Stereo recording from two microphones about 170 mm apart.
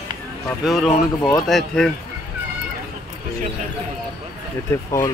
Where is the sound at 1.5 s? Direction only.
Centre (ahead or behind).